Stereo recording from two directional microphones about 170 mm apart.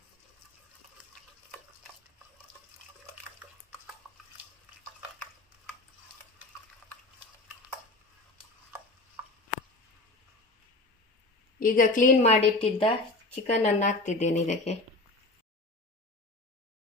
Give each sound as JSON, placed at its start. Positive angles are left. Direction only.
{"t": 11.6, "sound": "a woman's voice", "side_deg": 55}